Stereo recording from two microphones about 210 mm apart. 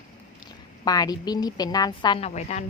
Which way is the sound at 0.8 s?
20° left (ahead or behind).